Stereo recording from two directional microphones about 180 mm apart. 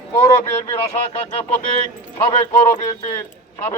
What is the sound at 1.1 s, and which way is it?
A man's voice, 35° left (ahead or behind).